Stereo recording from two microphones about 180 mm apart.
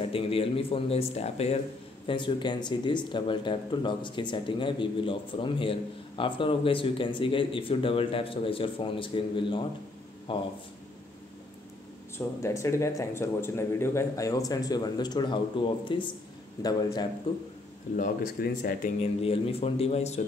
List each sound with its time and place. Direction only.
0.0 s speech: 30° left (ahead or behind)
12.2 s speech: 15° left (ahead or behind)
17.9 s speech: 45° left (ahead or behind)
18.9 s speech: 30° left (ahead or behind)